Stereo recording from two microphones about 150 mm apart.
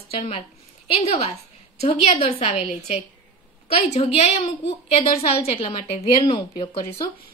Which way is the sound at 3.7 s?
40° left (ahead or behind).